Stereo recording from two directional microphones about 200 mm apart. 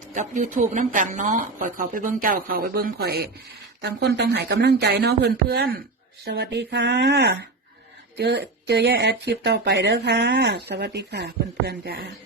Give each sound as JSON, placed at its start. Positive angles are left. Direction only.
{"t": 0.1, "sound": "speech", "side_deg": -40}